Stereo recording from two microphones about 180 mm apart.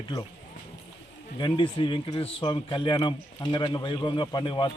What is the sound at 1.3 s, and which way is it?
Speech, 25° left (ahead or behind).